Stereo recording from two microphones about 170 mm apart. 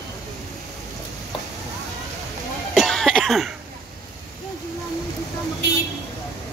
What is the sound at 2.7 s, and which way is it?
Cough, centre (ahead or behind).